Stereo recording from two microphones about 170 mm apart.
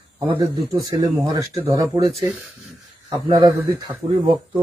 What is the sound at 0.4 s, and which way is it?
Speech, 25° right (ahead or behind).